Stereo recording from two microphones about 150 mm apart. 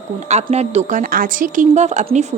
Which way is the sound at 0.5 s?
50° right (ahead or behind).